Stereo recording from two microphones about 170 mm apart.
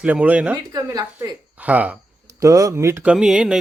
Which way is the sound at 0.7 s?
20° right (ahead or behind).